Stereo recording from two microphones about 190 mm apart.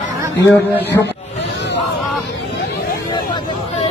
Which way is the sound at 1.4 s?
65° left (ahead or behind).